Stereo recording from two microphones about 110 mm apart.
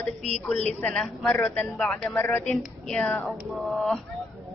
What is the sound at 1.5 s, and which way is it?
Speech, centre (ahead or behind).